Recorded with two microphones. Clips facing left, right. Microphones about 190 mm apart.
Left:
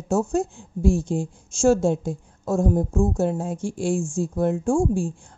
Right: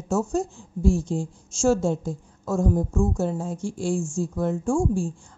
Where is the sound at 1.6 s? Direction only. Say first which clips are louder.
Left 3 dB; 55° left (ahead or behind).